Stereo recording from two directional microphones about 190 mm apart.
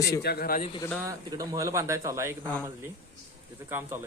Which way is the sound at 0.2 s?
55° left (ahead or behind).